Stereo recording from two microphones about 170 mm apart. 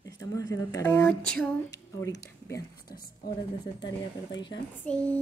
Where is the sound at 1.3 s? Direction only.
5° left (ahead or behind).